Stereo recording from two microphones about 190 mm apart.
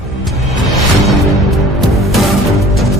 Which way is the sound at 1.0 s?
Centre (ahead or behind).